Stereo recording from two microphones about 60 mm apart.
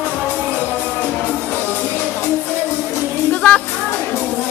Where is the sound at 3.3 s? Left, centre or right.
Centre.